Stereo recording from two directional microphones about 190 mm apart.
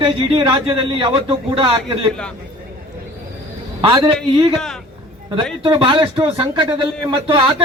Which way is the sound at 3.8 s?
30° right (ahead or behind).